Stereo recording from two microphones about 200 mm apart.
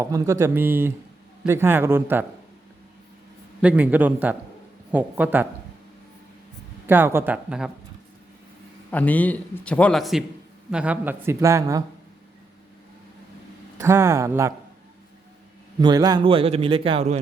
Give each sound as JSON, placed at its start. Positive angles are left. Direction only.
{"t": 0.0, "sound": "speech", "side_deg": -15}
{"t": 3.6, "sound": "speech", "side_deg": -5}
{"t": 6.8, "sound": "speech", "side_deg": -10}
{"t": 8.9, "sound": "a man's voice", "side_deg": 10}
{"t": 13.7, "sound": "speech", "side_deg": -15}
{"t": 15.8, "sound": "a man's voice", "side_deg": -20}